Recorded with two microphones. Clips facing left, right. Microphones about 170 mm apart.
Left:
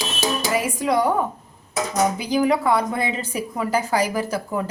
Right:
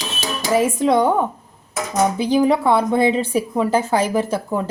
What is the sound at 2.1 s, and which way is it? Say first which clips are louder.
A woman's voice: right 4 dB; 30° right (ahead or behind).